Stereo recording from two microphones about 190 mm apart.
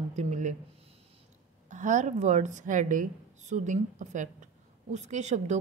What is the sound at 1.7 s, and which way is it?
A woman's voice, 40° right (ahead or behind).